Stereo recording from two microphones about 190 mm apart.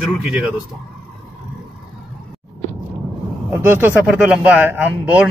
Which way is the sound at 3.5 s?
10° right (ahead or behind).